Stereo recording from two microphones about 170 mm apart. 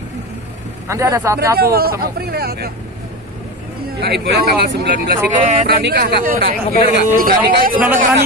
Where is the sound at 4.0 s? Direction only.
70° right (ahead or behind).